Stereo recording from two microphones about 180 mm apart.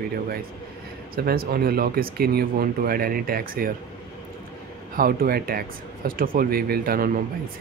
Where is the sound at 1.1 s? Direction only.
55° right (ahead or behind).